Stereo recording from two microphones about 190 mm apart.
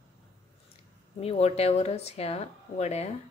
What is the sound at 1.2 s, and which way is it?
Speech, 30° left (ahead or behind).